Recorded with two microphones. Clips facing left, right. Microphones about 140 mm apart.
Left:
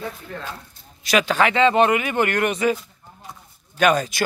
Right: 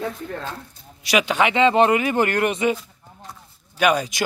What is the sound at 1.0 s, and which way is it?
Speech, 15° right (ahead or behind).